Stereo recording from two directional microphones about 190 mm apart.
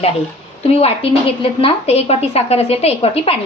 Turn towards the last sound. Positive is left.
turn(degrees=30)  # may be behind; listen again after turning